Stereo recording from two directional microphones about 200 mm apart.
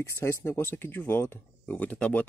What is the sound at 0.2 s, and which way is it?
Speech, 15° left (ahead or behind).